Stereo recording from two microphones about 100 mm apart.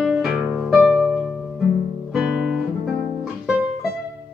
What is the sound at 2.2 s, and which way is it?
Guitar, 5° right (ahead or behind).